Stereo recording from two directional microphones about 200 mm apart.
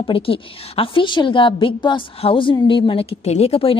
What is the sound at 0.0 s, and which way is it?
A woman's voice, 25° left (ahead or behind).